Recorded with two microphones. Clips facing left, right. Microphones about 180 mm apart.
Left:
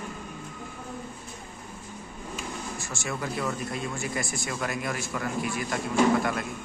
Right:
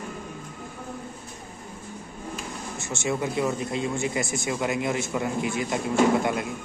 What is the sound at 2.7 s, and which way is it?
Speech, 20° right (ahead or behind).